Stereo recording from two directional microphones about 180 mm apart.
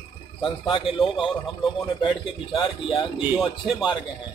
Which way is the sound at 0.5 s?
30° left (ahead or behind).